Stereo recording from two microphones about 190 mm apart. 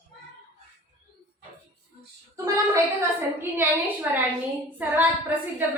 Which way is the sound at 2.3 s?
15° right (ahead or behind).